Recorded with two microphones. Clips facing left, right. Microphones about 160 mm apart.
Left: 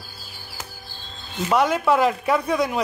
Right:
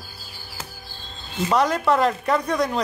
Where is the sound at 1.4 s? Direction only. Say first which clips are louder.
Left 1 dB; centre (ahead or behind).